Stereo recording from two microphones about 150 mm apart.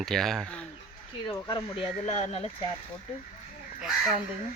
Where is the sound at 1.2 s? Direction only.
30° left (ahead or behind).